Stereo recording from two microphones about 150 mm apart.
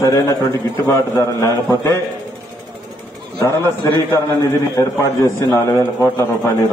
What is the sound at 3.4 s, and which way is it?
A man's voice, 15° left (ahead or behind).